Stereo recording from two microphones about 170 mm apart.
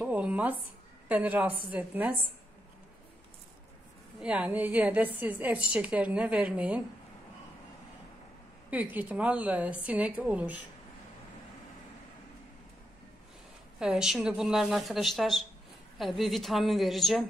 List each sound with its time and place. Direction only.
0.0 s a sound: 5° right (ahead or behind)
1.0 s a woman's voice: 10° right (ahead or behind)
4.2 s a woman's voice: 10° right (ahead or behind)
8.6 s a woman's voice: 10° right (ahead or behind)
13.7 s speech: 5° right (ahead or behind)